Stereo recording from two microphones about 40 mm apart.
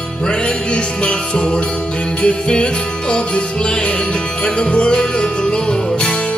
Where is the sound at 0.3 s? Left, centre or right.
Left.